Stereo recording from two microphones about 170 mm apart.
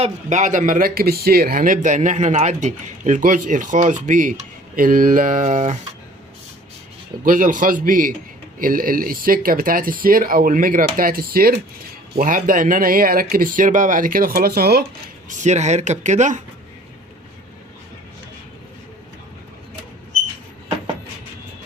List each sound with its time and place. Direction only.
0.0 s speech: 45° right (ahead or behind)
7.3 s speech: 50° right (ahead or behind)
15.3 s speech: 45° right (ahead or behind)